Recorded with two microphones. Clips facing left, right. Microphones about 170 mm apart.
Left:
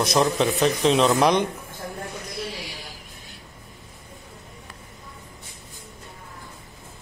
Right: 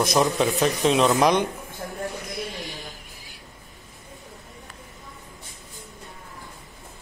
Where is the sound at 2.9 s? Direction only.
Centre (ahead or behind).